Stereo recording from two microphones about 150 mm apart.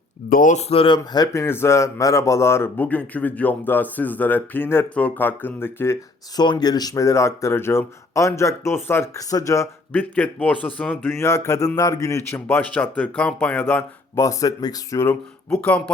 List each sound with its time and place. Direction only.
0.3 s speech: 65° left (ahead or behind); by 6.4 s 15° left (ahead or behind)
6.4 s speech: 30° left (ahead or behind); by 13.8 s 10° left (ahead or behind)
14.2 s speech: 20° left (ahead or behind)
15.4 s speech: 10° left (ahead or behind)